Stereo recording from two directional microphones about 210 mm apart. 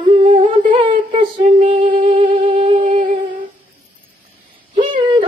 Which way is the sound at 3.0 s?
35° right (ahead or behind).